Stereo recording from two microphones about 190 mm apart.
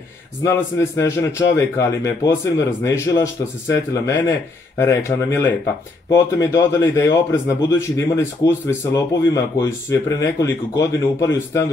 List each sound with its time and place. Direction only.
0.5 s speech: 15° left (ahead or behind)